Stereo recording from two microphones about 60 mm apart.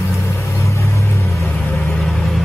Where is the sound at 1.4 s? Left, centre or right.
Left.